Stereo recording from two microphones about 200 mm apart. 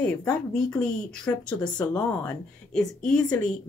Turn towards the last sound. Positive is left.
turn(degrees=5)  # may be behind; listen again after turning